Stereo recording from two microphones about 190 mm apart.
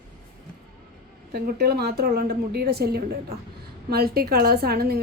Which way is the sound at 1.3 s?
55° right (ahead or behind).